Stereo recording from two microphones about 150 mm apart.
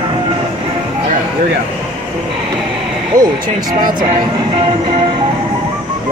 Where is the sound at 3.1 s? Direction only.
25° right (ahead or behind).